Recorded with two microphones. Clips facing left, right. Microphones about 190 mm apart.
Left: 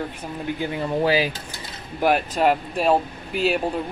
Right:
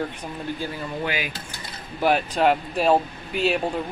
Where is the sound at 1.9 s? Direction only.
5° left (ahead or behind).